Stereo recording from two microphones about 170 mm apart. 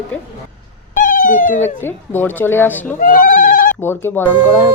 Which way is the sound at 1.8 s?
10° left (ahead or behind).